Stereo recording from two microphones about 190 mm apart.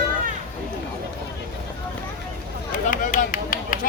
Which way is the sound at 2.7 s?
45° left (ahead or behind).